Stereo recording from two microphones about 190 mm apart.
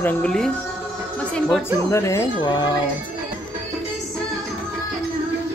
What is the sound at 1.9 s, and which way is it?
Speech, 15° left (ahead or behind).